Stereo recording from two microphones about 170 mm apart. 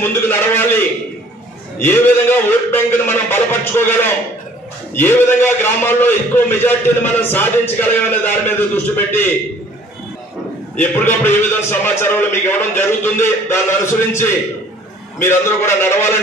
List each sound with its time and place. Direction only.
0.0 s a man's voice: 10° left (ahead or behind)
1.8 s a man's voice: 10° left (ahead or behind)
10.8 s a man's voice: 10° left (ahead or behind)